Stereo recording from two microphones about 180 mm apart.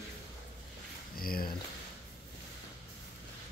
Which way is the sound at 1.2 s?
55° left (ahead or behind).